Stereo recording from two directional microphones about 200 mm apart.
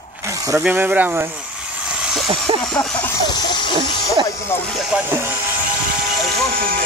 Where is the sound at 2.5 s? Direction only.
25° right (ahead or behind).